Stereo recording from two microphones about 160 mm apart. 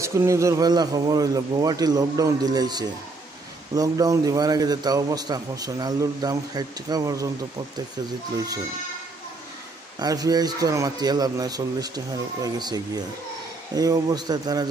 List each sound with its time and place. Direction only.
0.0 s a man's voice: 20° right (ahead or behind)
9.9 s a man's voice: 25° right (ahead or behind)